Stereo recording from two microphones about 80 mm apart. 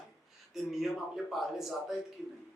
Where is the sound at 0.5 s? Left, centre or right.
Centre.